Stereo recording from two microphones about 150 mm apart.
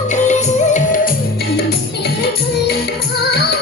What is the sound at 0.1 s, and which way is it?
Music, 55° left (ahead or behind).